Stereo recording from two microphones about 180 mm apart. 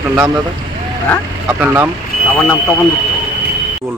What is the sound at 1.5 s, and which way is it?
Speech, 10° right (ahead or behind).